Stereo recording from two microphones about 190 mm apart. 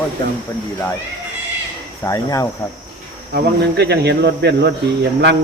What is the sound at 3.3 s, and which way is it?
A man's voice, 60° right (ahead or behind).